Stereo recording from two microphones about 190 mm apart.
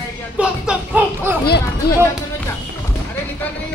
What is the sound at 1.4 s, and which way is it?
Speech, 55° left (ahead or behind).